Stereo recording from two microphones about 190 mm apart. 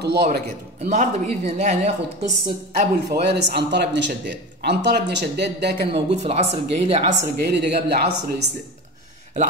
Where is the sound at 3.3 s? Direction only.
60° right (ahead or behind).